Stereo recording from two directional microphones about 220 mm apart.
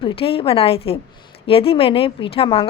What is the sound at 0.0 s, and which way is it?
A woman's voice, 25° left (ahead or behind).